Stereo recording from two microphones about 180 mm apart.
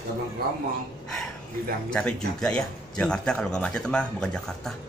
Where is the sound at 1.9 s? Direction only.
5° left (ahead or behind).